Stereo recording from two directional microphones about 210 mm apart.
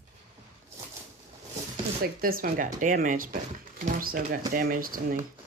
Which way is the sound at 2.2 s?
45° right (ahead or behind).